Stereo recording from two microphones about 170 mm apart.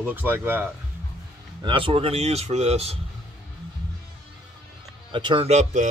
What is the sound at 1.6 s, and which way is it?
Speech, 30° right (ahead or behind).